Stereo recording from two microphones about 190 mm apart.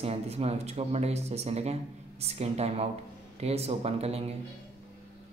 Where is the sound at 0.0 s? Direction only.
35° right (ahead or behind).